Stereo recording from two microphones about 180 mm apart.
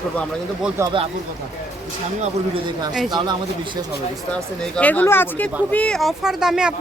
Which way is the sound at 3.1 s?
25° right (ahead or behind).